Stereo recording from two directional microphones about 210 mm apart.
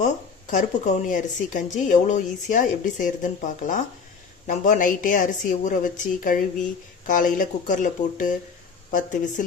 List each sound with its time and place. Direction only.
0.0 s speech: 35° left (ahead or behind)